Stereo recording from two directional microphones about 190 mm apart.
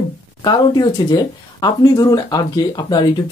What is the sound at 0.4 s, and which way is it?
Speech, 25° left (ahead or behind).